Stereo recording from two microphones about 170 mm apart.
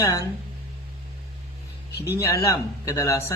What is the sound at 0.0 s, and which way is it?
Speech, 20° left (ahead or behind).